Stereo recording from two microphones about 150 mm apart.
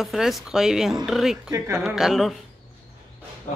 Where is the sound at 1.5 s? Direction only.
15° right (ahead or behind).